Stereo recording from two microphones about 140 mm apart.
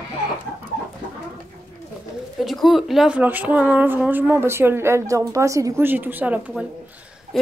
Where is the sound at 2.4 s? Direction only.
Centre (ahead or behind).